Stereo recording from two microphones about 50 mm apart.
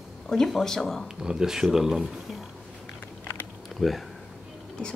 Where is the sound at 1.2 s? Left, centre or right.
Centre.